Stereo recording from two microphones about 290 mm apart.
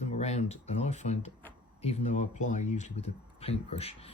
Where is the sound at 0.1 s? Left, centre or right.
Left.